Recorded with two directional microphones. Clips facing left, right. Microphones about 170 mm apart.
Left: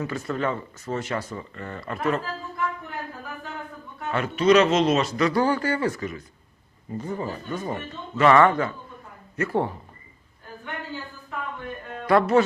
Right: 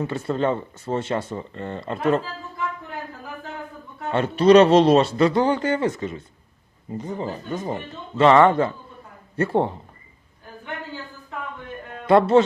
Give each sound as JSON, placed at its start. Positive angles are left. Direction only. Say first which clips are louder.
{"t": 0.0, "sound": "speech", "louder": "right 4 dB", "side_deg": -30}
{"t": 4.1, "sound": "a man's voice", "louder": "right 4 dB", "side_deg": -30}
{"t": 12.0, "sound": "speech", "louder": "right 4 dB", "side_deg": -25}